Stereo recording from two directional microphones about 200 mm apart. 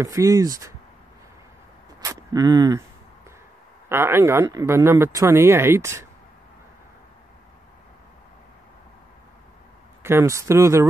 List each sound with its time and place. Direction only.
0.0 s speech: 15° right (ahead or behind)
2.0 s speech: 15° right (ahead or behind)
3.9 s speech: 10° right (ahead or behind)
10.0 s speech: 15° right (ahead or behind)